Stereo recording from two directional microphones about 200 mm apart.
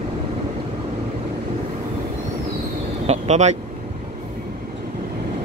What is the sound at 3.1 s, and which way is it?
Vehicle, 35° right (ahead or behind).